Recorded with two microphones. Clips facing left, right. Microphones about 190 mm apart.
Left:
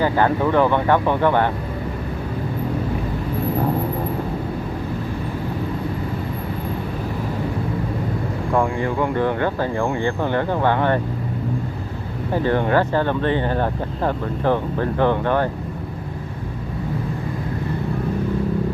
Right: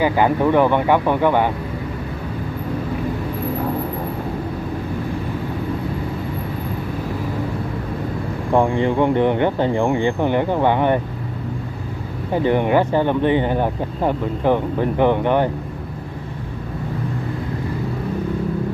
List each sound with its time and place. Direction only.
0.0 s speech: 15° right (ahead or behind)
8.5 s speech: 25° right (ahead or behind)
12.4 s speech: 15° right (ahead or behind)